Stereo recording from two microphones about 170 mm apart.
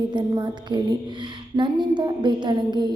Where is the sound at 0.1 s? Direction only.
25° right (ahead or behind).